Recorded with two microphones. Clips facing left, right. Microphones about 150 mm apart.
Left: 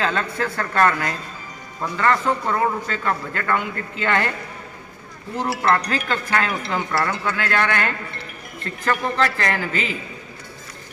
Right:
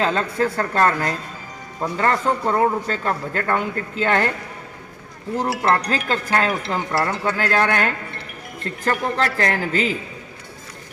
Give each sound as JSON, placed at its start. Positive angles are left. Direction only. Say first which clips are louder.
{"t": 0.0, "sound": "a man's voice", "louder": "right 3 dB", "side_deg": -35}
{"t": 5.5, "sound": "a man's voice", "louder": "even", "side_deg": -25}